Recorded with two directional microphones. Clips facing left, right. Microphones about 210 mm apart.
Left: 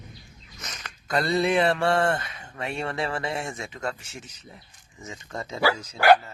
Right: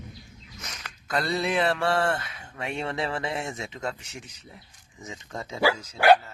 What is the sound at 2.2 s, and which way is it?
Speech, 10° right (ahead or behind).